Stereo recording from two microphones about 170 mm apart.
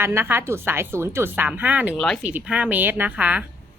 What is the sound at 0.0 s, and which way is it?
A woman's voice, 15° right (ahead or behind).